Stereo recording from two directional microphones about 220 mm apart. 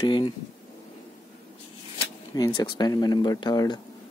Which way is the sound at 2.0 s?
20° left (ahead or behind).